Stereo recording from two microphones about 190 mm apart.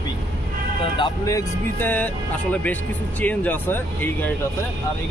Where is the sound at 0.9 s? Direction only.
20° left (ahead or behind).